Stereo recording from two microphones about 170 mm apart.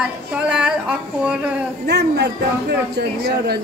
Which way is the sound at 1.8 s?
75° right (ahead or behind).